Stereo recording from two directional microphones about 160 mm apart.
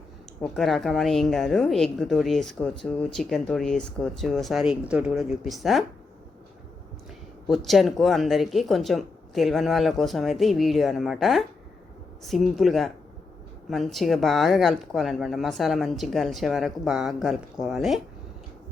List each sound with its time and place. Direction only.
0.4 s speech: centre (ahead or behind)
7.4 s speech: centre (ahead or behind)